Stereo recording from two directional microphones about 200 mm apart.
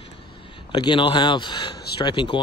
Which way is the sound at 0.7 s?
20° left (ahead or behind).